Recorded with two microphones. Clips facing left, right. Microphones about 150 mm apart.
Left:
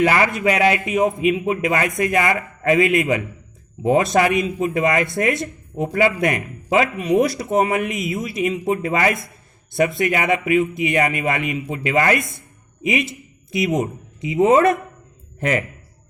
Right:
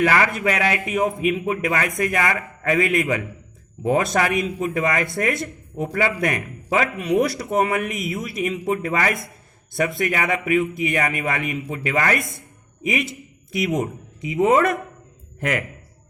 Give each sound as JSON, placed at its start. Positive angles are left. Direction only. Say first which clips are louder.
{"t": 0.0, "sound": "a man's voice", "louder": "left 2 dB", "side_deg": 25}